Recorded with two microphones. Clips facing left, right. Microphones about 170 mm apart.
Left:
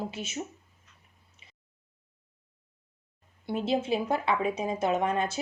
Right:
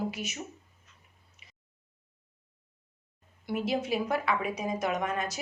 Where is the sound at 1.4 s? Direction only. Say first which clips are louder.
Left 2 dB; 30° left (ahead or behind).